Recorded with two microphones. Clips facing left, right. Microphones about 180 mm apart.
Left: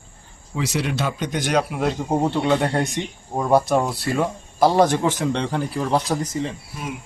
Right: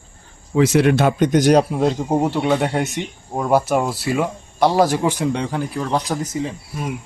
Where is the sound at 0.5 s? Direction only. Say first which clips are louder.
Right 10 dB; 55° right (ahead or behind); by 1.7 s 35° right (ahead or behind).